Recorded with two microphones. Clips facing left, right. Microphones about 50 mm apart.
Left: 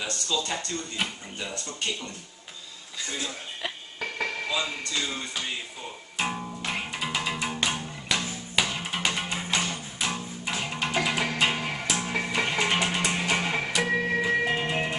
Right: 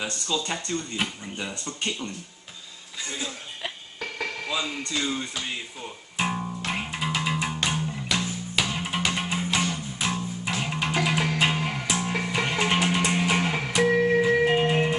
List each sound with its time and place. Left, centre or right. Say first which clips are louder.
0.0 s speech: right 1 dB; centre
3.3 s music: even; centre
4.5 s a man's voice: even; centre
6.1 s music: right 3 dB; centre
8.7 s music: right 2 dB; centre
13.8 s music: right 8 dB; centre
14.5 s music: right 5 dB; centre